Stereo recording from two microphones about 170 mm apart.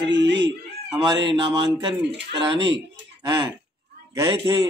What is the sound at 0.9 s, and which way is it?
Speech, 25° right (ahead or behind).